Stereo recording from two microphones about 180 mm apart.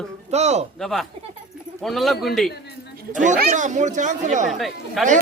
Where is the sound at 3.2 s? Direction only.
45° right (ahead or behind).